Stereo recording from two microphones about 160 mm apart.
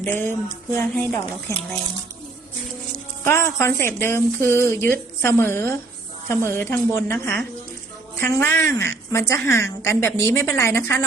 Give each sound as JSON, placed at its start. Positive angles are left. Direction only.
{"t": 0.1, "sound": "speech", "side_deg": 15}
{"t": 3.2, "sound": "speech", "side_deg": 15}